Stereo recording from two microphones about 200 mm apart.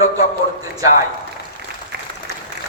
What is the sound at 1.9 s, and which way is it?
Applause, 50° right (ahead or behind).